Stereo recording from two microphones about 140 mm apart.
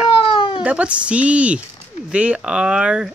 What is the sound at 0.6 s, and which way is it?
Speech, 10° right (ahead or behind).